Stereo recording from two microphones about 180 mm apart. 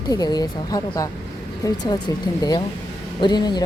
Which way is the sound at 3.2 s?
25° left (ahead or behind).